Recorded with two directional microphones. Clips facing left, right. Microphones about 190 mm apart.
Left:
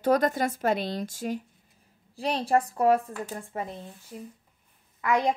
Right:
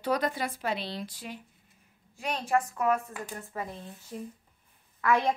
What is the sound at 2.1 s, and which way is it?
Speech, 35° left (ahead or behind).